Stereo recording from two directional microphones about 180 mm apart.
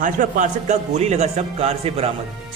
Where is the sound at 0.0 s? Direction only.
45° right (ahead or behind).